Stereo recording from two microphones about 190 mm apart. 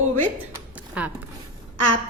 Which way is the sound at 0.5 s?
5° right (ahead or behind).